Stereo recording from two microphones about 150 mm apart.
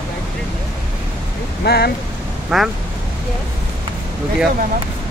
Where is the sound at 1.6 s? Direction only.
90° left.